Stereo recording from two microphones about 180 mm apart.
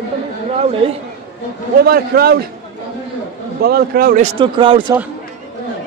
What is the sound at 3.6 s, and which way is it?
Speech, 55° right (ahead or behind).